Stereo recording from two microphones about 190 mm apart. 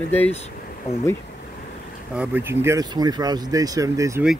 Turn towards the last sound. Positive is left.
turn(degrees=-15)  # may be behind; listen again after turning